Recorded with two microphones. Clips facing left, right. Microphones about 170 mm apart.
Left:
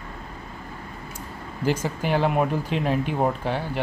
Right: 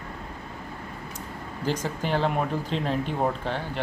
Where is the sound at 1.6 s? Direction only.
10° left (ahead or behind).